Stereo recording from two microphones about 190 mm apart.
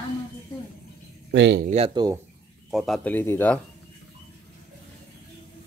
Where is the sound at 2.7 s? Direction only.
Centre (ahead or behind).